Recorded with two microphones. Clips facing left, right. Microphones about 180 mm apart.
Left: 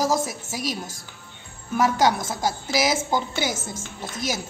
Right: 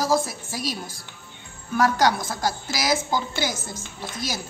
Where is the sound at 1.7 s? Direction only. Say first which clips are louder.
Even; 20° left (ahead or behind).